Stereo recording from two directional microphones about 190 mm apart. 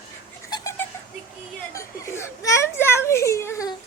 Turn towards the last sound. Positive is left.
turn(degrees=15)  # may be behind; listen again after turning